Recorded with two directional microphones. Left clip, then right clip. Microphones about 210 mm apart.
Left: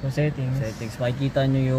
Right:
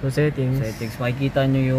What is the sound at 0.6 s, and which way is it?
Speech, 5° right (ahead or behind).